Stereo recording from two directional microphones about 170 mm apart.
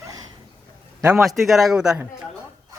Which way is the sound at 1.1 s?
Centre (ahead or behind).